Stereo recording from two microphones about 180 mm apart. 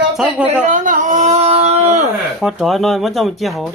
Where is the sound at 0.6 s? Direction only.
45° right (ahead or behind).